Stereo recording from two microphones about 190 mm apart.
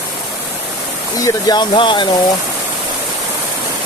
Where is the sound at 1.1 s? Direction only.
20° left (ahead or behind).